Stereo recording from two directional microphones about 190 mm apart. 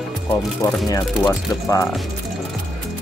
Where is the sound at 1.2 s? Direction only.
20° left (ahead or behind).